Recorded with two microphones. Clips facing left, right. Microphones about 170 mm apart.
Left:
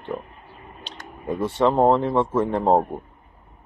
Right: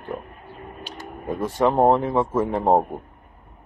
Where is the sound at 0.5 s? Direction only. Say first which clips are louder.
Right 6 dB; 50° right (ahead or behind).